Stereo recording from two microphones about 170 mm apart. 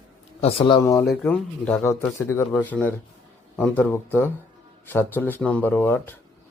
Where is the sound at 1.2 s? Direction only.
10° left (ahead or behind).